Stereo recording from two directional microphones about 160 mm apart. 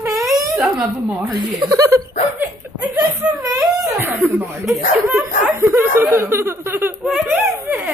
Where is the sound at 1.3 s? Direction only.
25° right (ahead or behind).